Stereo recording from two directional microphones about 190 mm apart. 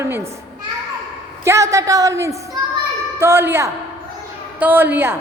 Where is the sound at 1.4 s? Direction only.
15° right (ahead or behind).